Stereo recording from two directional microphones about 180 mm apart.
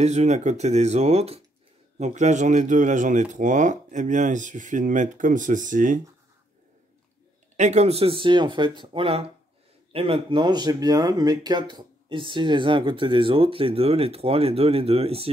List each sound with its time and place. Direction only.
0.0 s speech: 40° right (ahead or behind)
7.5 s speech: 40° right (ahead or behind)